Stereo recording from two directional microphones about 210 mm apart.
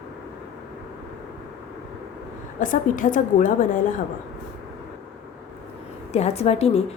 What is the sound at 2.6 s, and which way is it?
Speech, 40° left (ahead or behind).